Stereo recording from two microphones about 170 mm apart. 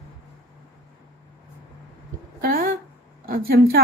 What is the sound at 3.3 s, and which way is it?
Speech, 65° right (ahead or behind).